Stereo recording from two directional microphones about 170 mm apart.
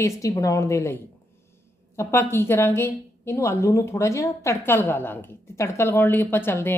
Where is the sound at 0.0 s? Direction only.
20° left (ahead or behind).